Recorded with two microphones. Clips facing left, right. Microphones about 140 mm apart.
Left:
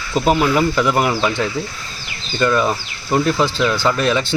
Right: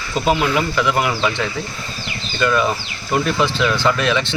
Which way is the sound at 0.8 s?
40° left (ahead or behind).